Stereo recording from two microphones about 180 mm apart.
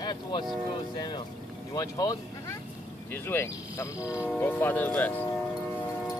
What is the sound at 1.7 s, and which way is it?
Vehicle, 20° left (ahead or behind).